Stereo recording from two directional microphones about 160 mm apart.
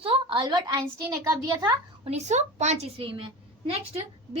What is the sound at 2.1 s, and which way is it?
A woman's voice, 45° right (ahead or behind).